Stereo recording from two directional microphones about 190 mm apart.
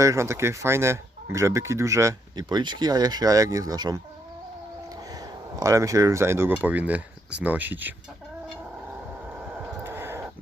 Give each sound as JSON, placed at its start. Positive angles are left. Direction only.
{"t": 0.0, "sound": "speech", "side_deg": -15}
{"t": 5.5, "sound": "speech", "side_deg": -15}
{"t": 9.5, "sound": "a sound", "side_deg": -10}